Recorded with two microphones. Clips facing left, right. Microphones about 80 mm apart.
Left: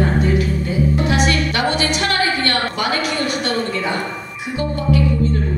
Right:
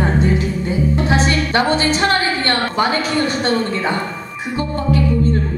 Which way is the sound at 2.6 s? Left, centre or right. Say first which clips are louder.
Right 3 dB; right.